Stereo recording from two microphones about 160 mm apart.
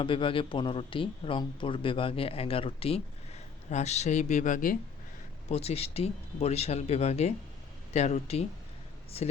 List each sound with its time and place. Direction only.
0.0 s speech: 30° left (ahead or behind); by 4.8 s 55° left (ahead or behind)
5.5 s speech: 40° left (ahead or behind)